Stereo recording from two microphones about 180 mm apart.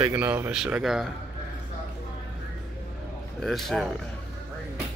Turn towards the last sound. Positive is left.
turn(degrees=0)  # may be behind; listen again after turning